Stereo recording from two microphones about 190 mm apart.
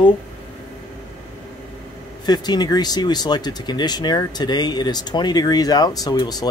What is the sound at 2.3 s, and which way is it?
Speech, 20° left (ahead or behind).